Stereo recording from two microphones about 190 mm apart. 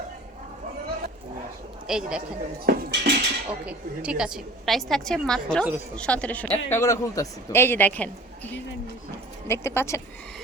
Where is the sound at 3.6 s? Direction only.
5° right (ahead or behind).